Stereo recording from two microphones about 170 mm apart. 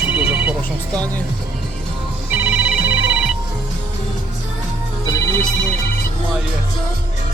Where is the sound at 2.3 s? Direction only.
10° right (ahead or behind).